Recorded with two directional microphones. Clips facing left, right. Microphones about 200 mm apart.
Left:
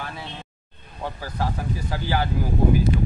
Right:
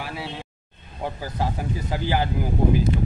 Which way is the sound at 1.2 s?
15° right (ahead or behind).